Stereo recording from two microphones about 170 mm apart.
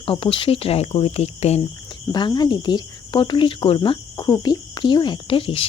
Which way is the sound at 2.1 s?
25° left (ahead or behind).